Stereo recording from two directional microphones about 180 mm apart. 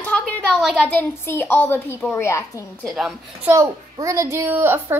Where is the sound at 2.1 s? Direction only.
15° left (ahead or behind).